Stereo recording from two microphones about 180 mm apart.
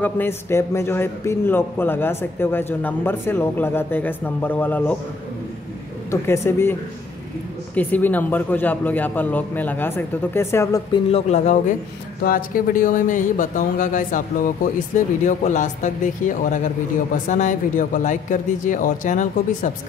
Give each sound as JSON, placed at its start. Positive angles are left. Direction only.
{"t": 0.0, "sound": "a man's voice", "side_deg": 10}
{"t": 6.0, "sound": "a man's voice", "side_deg": 15}
{"t": 10.9, "sound": "speech", "side_deg": 35}
{"t": 12.2, "sound": "speech", "side_deg": 50}